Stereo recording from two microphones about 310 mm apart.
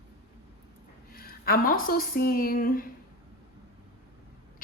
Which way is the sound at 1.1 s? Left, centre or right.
Left.